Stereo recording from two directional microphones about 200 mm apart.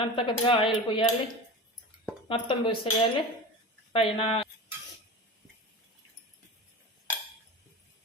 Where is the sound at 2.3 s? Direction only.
25° left (ahead or behind).